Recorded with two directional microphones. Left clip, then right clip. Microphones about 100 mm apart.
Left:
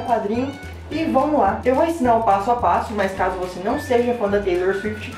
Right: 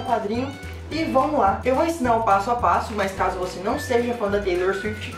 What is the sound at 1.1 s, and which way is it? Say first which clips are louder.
Speech: left 2 dB; 20° right (ahead or behind).